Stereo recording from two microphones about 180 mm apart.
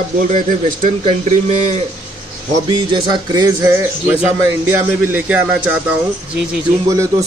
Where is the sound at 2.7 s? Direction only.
25° right (ahead or behind).